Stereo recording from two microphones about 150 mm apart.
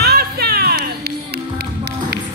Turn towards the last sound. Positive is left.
turn(degrees=-90)